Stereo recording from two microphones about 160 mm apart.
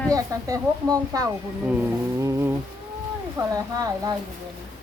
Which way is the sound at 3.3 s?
20° right (ahead or behind).